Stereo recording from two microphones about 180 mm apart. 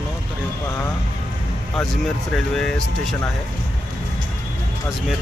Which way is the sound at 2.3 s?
5° left (ahead or behind).